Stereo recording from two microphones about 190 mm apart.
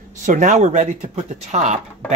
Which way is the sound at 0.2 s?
40° right (ahead or behind).